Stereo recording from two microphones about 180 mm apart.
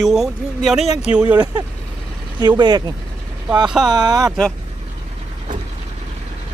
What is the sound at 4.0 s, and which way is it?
Speech, 20° right (ahead or behind).